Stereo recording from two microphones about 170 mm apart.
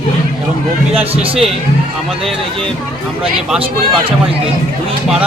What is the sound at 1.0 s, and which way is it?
Speech, 35° right (ahead or behind).